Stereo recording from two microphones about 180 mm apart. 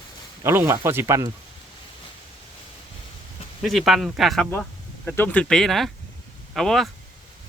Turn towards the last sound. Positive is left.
turn(degrees=0)  # may be behind; listen again after turning